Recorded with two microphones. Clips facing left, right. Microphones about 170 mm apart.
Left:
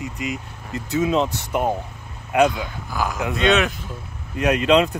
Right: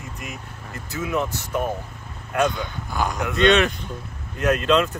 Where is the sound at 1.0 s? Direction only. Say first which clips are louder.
Left 4 dB; 20° left (ahead or behind).